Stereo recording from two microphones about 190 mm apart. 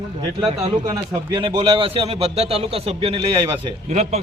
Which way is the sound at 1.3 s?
25° right (ahead or behind).